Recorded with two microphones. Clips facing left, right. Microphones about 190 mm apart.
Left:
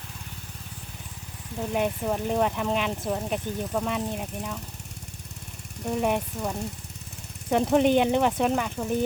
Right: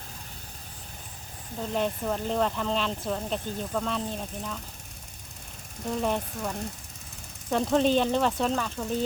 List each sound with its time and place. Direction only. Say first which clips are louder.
1.7 s speech: left 2 dB; 10° left (ahead or behind)
5.9 s speech: left 3 dB; 15° left (ahead or behind)